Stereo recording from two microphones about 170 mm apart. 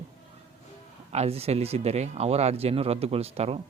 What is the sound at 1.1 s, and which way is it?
Speech, 40° right (ahead or behind).